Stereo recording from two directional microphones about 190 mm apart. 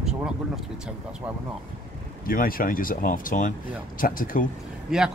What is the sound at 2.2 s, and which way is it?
Speech, 50° left (ahead or behind).